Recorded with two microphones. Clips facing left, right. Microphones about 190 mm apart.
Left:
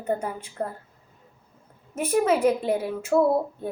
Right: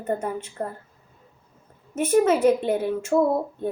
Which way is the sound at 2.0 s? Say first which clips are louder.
Right 3 dB; centre (ahead or behind).